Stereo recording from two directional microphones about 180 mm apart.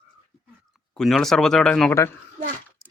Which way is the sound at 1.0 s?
Centre (ahead or behind).